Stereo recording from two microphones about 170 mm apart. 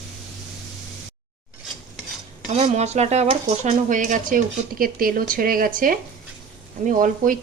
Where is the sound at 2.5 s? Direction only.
40° right (ahead or behind).